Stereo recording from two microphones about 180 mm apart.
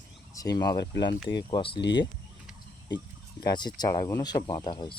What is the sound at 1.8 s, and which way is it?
Speech, 75° left (ahead or behind).